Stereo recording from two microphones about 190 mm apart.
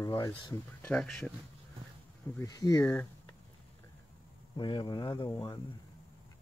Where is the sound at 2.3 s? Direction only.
20° left (ahead or behind).